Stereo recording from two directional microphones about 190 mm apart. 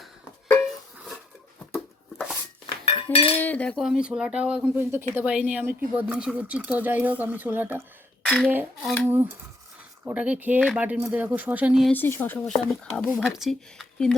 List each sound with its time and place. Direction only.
0.0 s a sound: 5° left (ahead or behind)
2.8 s cutlery: 30° left (ahead or behind)
3.3 s speech: 10° left (ahead or behind); by 7.8 s 10° right (ahead or behind)
8.2 s a sound: 5° left (ahead or behind)
8.4 s speech: 5° right (ahead or behind)
11.9 s speech: 10° left (ahead or behind)